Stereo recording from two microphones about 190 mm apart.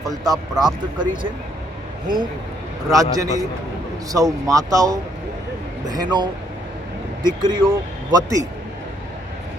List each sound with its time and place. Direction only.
0.0 s speech: 20° right (ahead or behind)
2.9 s a man's voice: 20° right (ahead or behind)